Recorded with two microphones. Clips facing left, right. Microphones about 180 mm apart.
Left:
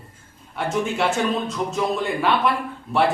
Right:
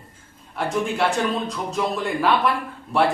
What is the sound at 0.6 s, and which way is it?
Speech, centre (ahead or behind).